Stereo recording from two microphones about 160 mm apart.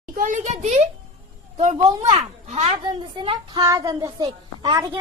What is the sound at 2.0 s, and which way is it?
Speech, 45° right (ahead or behind).